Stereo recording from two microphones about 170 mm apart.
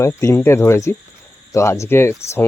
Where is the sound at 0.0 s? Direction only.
15° left (ahead or behind).